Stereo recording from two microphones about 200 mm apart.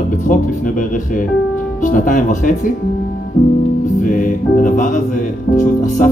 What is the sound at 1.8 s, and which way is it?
Speech, 40° left (ahead or behind).